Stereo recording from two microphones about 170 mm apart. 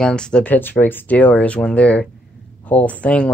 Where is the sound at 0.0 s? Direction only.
5° left (ahead or behind).